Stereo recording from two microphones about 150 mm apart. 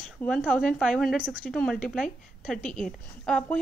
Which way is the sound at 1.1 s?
10° right (ahead or behind).